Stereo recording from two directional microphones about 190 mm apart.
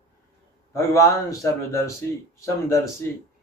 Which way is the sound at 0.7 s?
15° left (ahead or behind).